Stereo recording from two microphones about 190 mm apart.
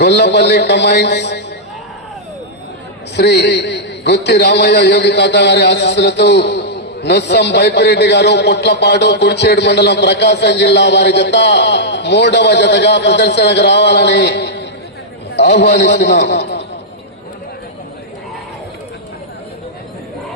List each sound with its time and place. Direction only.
0.0 s a man's voice: 65° left (ahead or behind)
3.2 s a man's voice: 65° left (ahead or behind)